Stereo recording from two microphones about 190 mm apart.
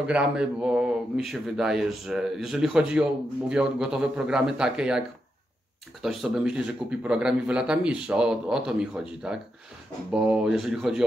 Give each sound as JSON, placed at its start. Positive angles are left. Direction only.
{"t": 0.0, "sound": "speech", "side_deg": -5}
{"t": 6.0, "sound": "speech", "side_deg": -5}